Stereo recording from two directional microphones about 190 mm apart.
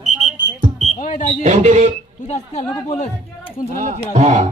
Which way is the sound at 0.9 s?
45° left (ahead or behind).